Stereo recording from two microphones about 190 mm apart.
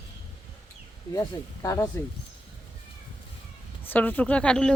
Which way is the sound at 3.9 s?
10° left (ahead or behind).